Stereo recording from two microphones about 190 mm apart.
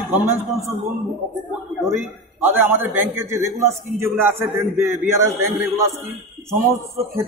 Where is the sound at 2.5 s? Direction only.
10° right (ahead or behind).